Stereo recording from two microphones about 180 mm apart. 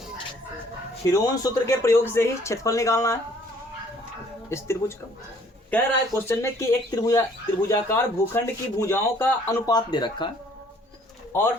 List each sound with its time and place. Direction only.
1.0 s speech: 20° left (ahead or behind)
4.4 s speech: 15° left (ahead or behind)
11.3 s speech: 10° left (ahead or behind)